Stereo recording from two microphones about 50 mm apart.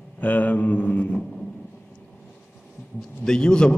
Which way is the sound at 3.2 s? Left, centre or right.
Centre.